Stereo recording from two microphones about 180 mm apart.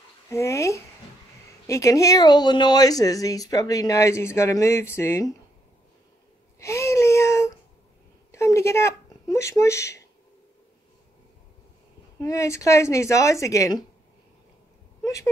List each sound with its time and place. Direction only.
0.3 s speech: 15° left (ahead or behind)
6.6 s a sound: 15° left (ahead or behind)
12.2 s speech: 15° left (ahead or behind)